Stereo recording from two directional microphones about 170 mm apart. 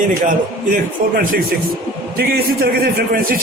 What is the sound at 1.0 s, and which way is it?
Speech, 50° right (ahead or behind).